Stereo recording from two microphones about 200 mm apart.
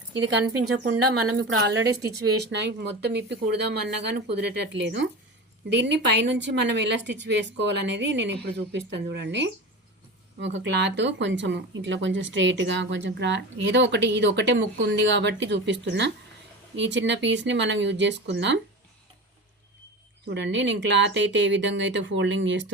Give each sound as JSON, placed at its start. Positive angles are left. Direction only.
{"t": 0.6, "sound": "a woman's voice", "side_deg": -90}
{"t": 2.4, "sound": "speech", "side_deg": -60}
{"t": 20.2, "sound": "speech", "side_deg": -60}